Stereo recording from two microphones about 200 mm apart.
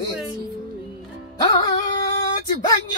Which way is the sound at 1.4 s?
20° left (ahead or behind).